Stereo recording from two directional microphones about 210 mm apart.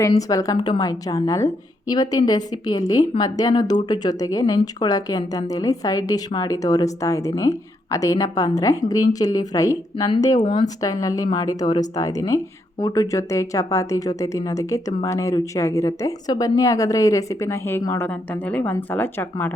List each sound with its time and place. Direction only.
0.2 s a woman's voice: 15° left (ahead or behind)